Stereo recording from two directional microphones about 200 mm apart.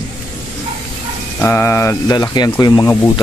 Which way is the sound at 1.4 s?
10° left (ahead or behind).